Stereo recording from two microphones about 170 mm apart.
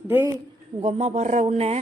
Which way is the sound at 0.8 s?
40° right (ahead or behind).